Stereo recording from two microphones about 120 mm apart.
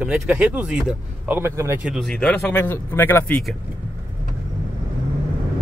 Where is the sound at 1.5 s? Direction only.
25° right (ahead or behind).